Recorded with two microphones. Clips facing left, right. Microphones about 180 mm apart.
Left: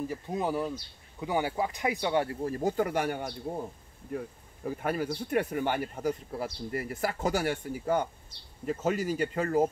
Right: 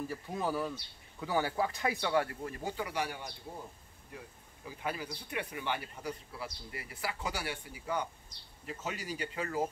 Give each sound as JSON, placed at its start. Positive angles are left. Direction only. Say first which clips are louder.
{"t": 0.1, "sound": "speech", "louder": "left 4 dB", "side_deg": 20}
{"t": 4.6, "sound": "speech", "louder": "left 8 dB", "side_deg": 50}